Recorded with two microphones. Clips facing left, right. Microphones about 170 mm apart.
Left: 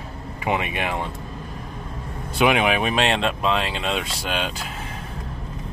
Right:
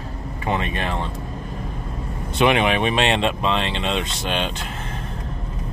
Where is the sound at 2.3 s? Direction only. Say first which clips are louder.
Right 1 dB; 5° left (ahead or behind).